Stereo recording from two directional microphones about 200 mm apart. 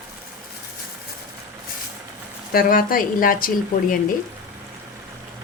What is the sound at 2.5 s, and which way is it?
A woman's voice, 45° left (ahead or behind).